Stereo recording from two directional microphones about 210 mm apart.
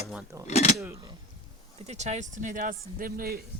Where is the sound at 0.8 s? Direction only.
15° right (ahead or behind).